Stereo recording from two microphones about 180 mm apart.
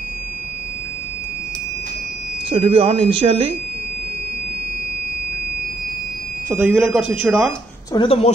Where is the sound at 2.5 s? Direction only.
30° right (ahead or behind).